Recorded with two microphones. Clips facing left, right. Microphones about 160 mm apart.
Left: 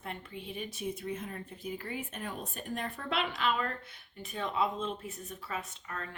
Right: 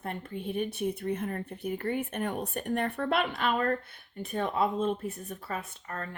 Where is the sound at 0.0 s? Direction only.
50° right (ahead or behind).